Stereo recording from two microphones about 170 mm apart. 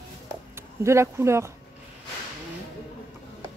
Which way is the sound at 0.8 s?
15° right (ahead or behind).